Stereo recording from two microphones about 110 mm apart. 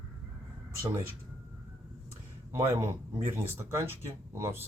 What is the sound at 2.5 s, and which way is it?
Speech, 25° right (ahead or behind).